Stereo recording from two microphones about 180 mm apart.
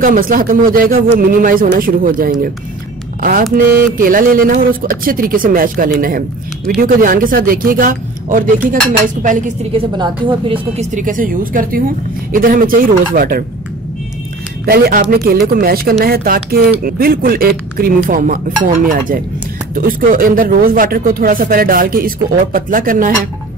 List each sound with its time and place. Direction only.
0.0 s speech: 50° right (ahead or behind)
9.8 s speech: 25° right (ahead or behind)
10.8 s speech: 45° right (ahead or behind)
14.7 s speech: 55° right (ahead or behind)